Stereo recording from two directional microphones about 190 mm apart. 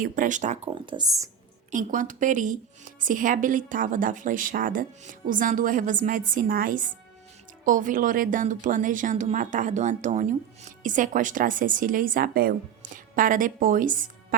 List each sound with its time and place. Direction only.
0.0 s speech: 45° right (ahead or behind)
0.9 s speech: 20° right (ahead or behind)
1.7 s speech: 45° right (ahead or behind)